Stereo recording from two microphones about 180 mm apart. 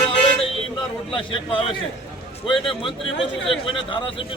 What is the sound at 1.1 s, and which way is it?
Speech, 30° left (ahead or behind).